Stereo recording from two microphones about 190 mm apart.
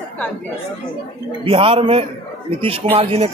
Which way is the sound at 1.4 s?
30° right (ahead or behind).